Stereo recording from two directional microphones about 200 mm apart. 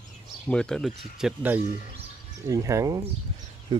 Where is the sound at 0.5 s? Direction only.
5° left (ahead or behind); by 3.0 s 15° right (ahead or behind).